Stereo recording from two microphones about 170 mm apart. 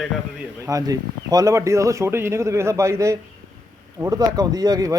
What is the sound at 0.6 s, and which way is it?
Speech, 20° right (ahead or behind).